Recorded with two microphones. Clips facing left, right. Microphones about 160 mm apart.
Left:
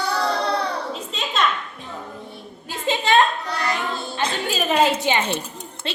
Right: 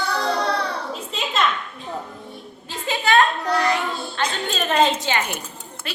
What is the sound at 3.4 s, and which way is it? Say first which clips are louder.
Child singing: right 6 dB; 65° right (ahead or behind).